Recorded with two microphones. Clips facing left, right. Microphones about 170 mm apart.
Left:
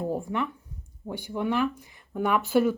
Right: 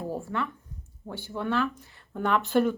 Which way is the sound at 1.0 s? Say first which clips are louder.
Left 3 dB; 15° left (ahead or behind).